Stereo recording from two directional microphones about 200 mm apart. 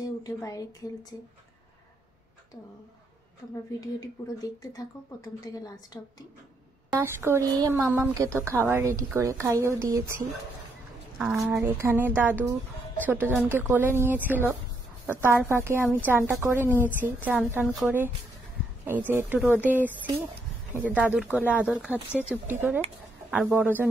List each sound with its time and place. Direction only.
0.2 s a woman's voice: 15° left (ahead or behind)
3.8 s a woman's voice: 20° left (ahead or behind)
7.0 s speech: 15° right (ahead or behind)
11.1 s speech: 10° right (ahead or behind)